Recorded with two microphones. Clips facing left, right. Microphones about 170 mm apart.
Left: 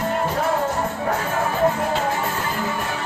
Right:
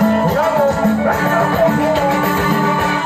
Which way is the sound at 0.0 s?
75° right (ahead or behind).